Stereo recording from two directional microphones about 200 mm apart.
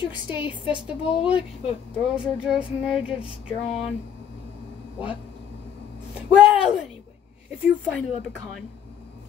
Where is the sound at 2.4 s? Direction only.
5° right (ahead or behind).